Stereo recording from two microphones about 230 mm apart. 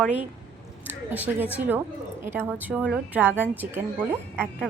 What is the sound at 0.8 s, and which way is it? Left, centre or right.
A woman's voice, centre.